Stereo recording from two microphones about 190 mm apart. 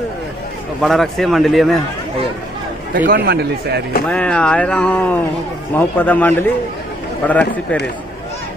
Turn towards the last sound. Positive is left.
turn(degrees=10)  # may be behind; listen again after turning